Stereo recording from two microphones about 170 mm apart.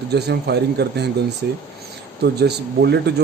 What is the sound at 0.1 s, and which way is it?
Speech, 75° right (ahead or behind).